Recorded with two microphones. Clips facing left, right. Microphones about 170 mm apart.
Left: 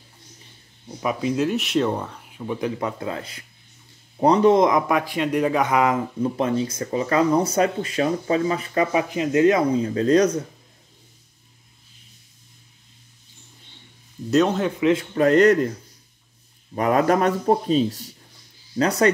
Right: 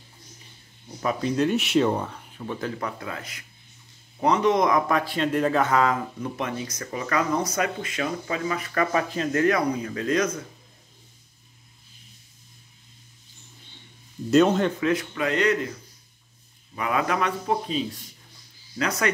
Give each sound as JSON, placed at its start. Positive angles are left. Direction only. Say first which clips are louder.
{"t": 1.0, "sound": "speech", "louder": "left 1 dB", "side_deg": 5}
{"t": 6.2, "sound": "speech", "louder": "left 8 dB", "side_deg": 30}
{"t": 8.9, "sound": "speech", "louder": "left 4 dB", "side_deg": 15}
{"t": 14.3, "sound": "speech", "louder": "right 1 dB", "side_deg": 0}
{"t": 14.8, "sound": "speech", "louder": "left 5 dB", "side_deg": 25}
{"t": 15.1, "sound": "speech", "louder": "left 8 dB", "side_deg": 45}
{"t": 16.7, "sound": "speech", "louder": "left 7 dB", "side_deg": 40}